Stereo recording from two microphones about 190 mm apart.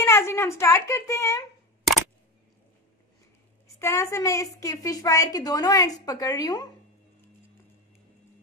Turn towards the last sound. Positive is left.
turn(degrees=20)  # may be behind; listen again after turning